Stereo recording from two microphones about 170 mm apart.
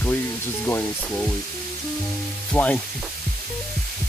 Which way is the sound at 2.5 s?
10° left (ahead or behind).